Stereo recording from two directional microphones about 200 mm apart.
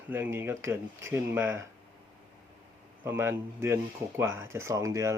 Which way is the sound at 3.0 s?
10° right (ahead or behind).